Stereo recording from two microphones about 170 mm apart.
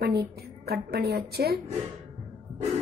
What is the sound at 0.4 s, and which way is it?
A woman's voice, 65° right (ahead or behind).